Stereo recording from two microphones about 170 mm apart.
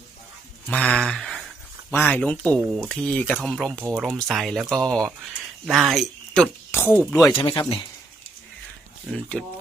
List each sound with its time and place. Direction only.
0.7 s speech: 5° left (ahead or behind)
1.0 s a sound: 5° left (ahead or behind)
1.9 s speech: 10° left (ahead or behind)
7.3 s speech: 25° left (ahead or behind)
9.4 s speech: centre (ahead or behind)